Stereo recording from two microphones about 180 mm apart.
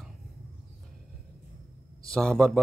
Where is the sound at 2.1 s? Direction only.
5° left (ahead or behind).